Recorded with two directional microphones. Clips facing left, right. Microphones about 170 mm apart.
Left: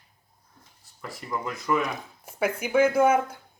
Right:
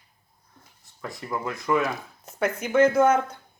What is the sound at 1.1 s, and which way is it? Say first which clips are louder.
Speech: right 2 dB; 15° right (ahead or behind).